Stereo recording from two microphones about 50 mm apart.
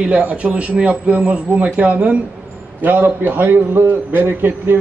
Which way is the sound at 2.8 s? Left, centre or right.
Right.